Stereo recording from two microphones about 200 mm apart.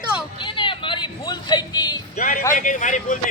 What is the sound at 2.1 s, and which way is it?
A man's voice, 40° left (ahead or behind).